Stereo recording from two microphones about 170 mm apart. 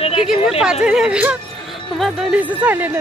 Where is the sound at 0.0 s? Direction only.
35° left (ahead or behind).